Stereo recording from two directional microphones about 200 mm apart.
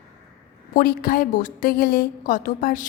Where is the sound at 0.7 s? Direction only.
50° left (ahead or behind).